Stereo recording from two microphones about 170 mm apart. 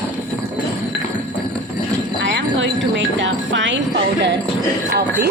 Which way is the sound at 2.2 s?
90° right.